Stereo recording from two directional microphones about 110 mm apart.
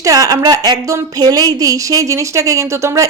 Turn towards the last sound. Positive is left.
turn(degrees=-25)  # may be behind; listen again after turning